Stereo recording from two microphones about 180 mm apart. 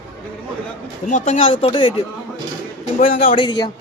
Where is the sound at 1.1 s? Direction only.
40° left (ahead or behind).